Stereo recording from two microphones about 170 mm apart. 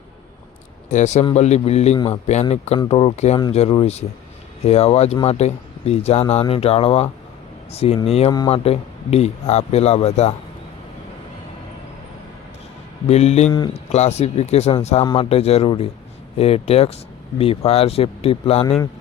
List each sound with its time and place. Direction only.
0.9 s speech: 45° left (ahead or behind)
13.1 s speech: 40° left (ahead or behind)